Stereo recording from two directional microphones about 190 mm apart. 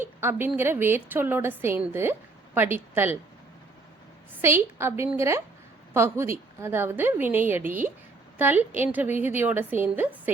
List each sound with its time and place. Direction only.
0.0 s a woman's voice: 10° right (ahead or behind)
4.4 s a woman's voice: 15° right (ahead or behind)